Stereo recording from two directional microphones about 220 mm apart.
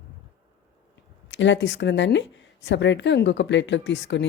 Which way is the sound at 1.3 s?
55° left (ahead or behind).